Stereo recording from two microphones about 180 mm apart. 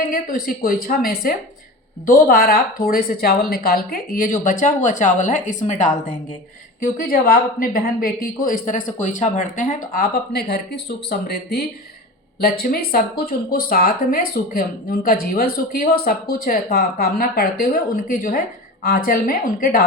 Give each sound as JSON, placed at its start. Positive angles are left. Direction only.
{"t": 0.1, "sound": "a woman's voice", "side_deg": 55}